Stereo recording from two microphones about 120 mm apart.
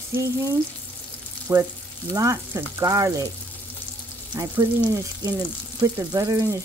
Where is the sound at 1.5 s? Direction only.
30° right (ahead or behind).